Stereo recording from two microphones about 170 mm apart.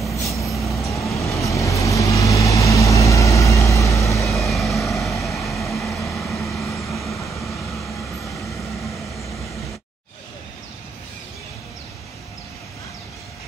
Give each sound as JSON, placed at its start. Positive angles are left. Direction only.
{"t": 0.1, "sound": "vehicle", "side_deg": 20}
{"t": 0.5, "sound": "vehicle", "side_deg": 0}
{"t": 0.9, "sound": "vehicle", "side_deg": 20}
{"t": 4.4, "sound": "vehicle", "side_deg": 0}